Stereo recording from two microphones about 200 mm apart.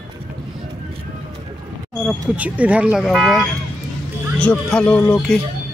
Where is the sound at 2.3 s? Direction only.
5° right (ahead or behind).